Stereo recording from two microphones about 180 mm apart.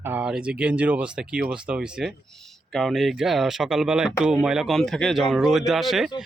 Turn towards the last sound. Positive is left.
turn(degrees=0)  # may be behind; listen again after turning